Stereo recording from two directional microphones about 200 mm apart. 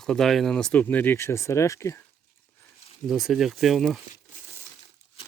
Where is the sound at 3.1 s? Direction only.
Centre (ahead or behind).